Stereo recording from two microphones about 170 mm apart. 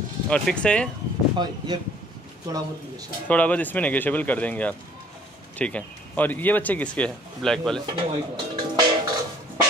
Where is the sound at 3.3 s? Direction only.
10° left (ahead or behind).